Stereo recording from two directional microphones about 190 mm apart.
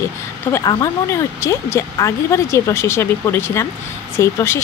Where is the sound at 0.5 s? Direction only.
20° left (ahead or behind).